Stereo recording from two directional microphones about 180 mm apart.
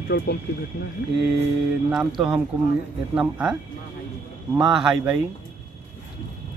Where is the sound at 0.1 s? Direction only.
70° left (ahead or behind).